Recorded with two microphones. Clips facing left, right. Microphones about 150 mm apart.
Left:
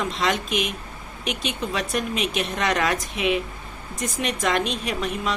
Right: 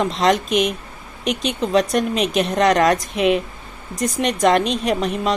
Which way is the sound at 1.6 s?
35° right (ahead or behind).